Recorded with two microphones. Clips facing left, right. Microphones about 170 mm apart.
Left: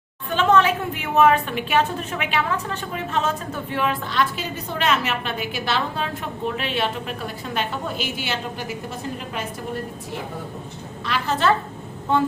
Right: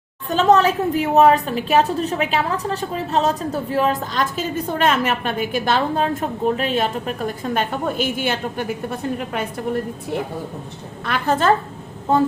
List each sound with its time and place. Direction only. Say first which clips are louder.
0.3 s a woman's voice: right 3 dB; 40° right (ahead or behind); by 9.4 s 55° right (ahead or behind)
11.0 s a woman's voice: right 3 dB; 50° right (ahead or behind)